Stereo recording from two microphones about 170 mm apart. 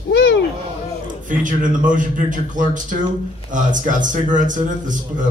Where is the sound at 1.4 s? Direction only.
50° right (ahead or behind).